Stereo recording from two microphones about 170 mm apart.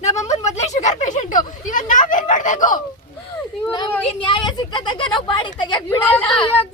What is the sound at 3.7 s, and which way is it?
Speech, 25° left (ahead or behind).